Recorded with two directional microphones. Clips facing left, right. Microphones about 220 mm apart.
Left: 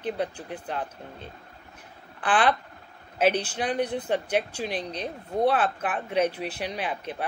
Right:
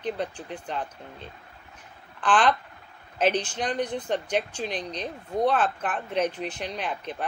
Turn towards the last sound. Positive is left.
turn(degrees=10)  # may be behind; listen again after turning